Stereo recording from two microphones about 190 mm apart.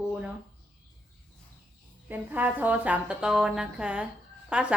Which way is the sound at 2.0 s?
10° right (ahead or behind).